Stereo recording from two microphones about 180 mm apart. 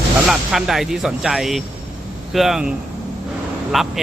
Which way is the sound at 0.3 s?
Centre (ahead or behind).